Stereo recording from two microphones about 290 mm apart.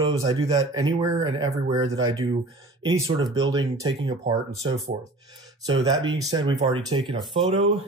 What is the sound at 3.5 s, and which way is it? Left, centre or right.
Speech, centre.